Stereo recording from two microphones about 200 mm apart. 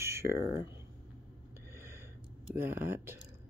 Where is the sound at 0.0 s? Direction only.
15° right (ahead or behind).